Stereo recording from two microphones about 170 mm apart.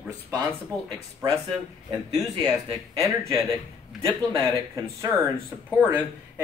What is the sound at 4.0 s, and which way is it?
A man's voice, 20° right (ahead or behind).